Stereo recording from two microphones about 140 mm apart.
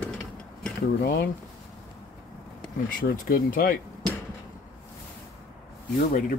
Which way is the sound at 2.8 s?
80° left.